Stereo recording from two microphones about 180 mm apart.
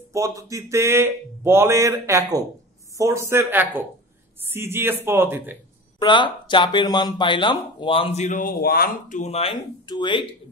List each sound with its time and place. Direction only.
0.1 s speech: 15° right (ahead or behind)
5.9 s speech: 25° left (ahead or behind)
9.8 s speech: 25° left (ahead or behind)